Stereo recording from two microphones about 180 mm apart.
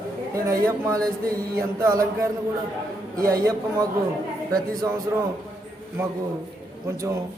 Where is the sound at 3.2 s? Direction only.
20° right (ahead or behind).